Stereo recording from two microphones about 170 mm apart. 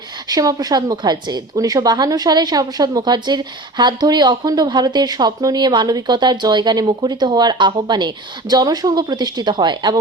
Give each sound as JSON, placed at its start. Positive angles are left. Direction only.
{"t": 0.3, "sound": "a woman's voice", "side_deg": -20}